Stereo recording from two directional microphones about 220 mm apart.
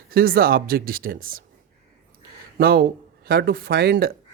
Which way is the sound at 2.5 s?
45° right (ahead or behind).